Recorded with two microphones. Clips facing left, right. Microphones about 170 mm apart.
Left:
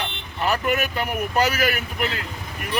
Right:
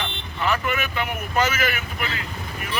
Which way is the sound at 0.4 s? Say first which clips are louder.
Left 2 dB; 40° left (ahead or behind).